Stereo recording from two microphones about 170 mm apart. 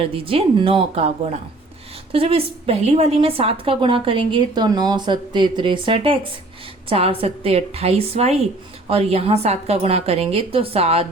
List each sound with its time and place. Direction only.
0.0 s a woman's voice: 35° right (ahead or behind)